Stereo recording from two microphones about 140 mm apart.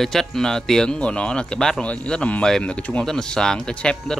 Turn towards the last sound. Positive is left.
turn(degrees=5)  # may be behind; listen again after turning